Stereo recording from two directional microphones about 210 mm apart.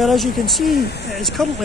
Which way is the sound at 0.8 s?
50° left (ahead or behind).